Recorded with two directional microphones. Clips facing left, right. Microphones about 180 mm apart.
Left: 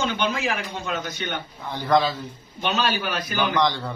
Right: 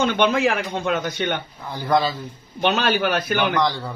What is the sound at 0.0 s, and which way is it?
Speech, 60° right (ahead or behind).